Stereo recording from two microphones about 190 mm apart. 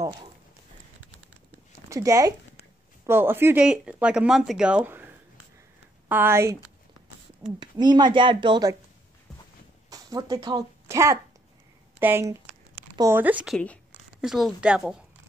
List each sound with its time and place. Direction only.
1.9 s speech: 15° right (ahead or behind)
7.6 s speech: 25° right (ahead or behind)
9.8 s speech: 20° right (ahead or behind)
12.7 s a sound: 25° right (ahead or behind)
13.1 s speech: 10° right (ahead or behind)